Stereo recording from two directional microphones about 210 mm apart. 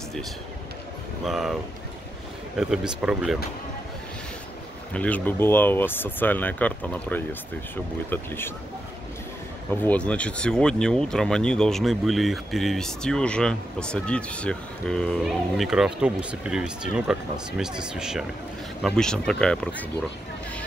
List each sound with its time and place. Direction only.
1.2 s speech: centre (ahead or behind)
4.9 s speech: 5° left (ahead or behind)
9.8 s speech: 5° left (ahead or behind)